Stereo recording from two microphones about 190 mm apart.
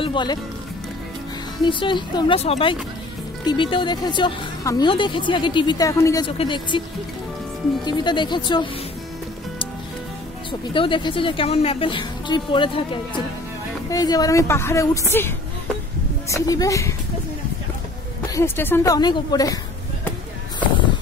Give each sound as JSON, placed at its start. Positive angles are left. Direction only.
{"t": 0.0, "sound": "speech", "side_deg": 25}
{"t": 1.6, "sound": "speech", "side_deg": 25}
{"t": 6.2, "sound": "speech", "side_deg": 25}
{"t": 7.8, "sound": "speech", "side_deg": 25}
{"t": 10.7, "sound": "a woman's voice", "side_deg": 25}
{"t": 18.3, "sound": "speech", "side_deg": 10}